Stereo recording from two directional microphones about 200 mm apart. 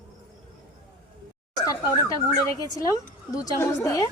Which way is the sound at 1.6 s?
15° left (ahead or behind).